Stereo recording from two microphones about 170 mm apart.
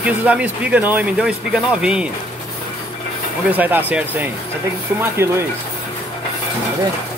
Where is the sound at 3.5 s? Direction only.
10° right (ahead or behind).